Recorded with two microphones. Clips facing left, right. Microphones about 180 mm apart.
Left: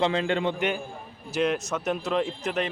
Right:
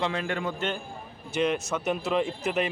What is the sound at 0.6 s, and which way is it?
Speech, 10° left (ahead or behind).